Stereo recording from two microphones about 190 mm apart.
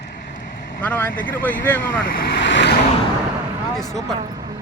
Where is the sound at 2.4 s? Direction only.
70° left (ahead or behind).